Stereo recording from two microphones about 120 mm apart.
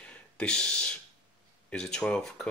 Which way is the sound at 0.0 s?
10° left (ahead or behind).